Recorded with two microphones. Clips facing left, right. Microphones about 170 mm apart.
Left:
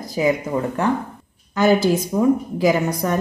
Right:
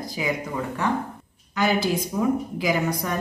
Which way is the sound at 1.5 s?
45° left (ahead or behind).